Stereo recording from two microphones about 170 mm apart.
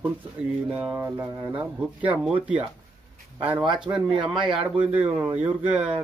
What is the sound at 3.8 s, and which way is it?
Speech, 5° right (ahead or behind).